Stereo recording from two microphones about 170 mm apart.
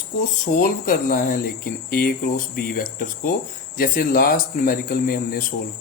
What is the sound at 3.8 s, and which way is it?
A man's voice, 60° left (ahead or behind).